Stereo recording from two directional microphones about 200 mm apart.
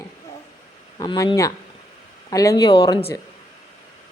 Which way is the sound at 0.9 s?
20° left (ahead or behind).